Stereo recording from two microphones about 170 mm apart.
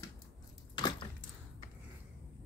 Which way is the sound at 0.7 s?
25° left (ahead or behind).